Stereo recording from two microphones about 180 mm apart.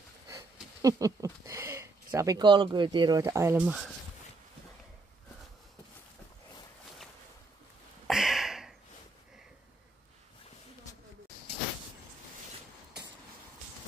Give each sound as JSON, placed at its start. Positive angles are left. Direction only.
{"t": 0.8, "sound": "speech", "side_deg": -20}
{"t": 3.5, "sound": "speech", "side_deg": -5}
{"t": 8.1, "sound": "a sound", "side_deg": 0}